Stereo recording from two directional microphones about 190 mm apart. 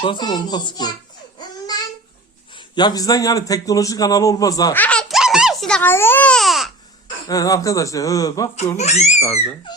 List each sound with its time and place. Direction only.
0.0 s speech: 25° left (ahead or behind)
1.4 s a sound: 20° left (ahead or behind)
2.6 s speech: 20° left (ahead or behind)
4.8 s speech: 5° left (ahead or behind)
7.3 s speech: 20° left (ahead or behind)
8.7 s speech: 35° left (ahead or behind)
9.7 s speech: 25° left (ahead or behind)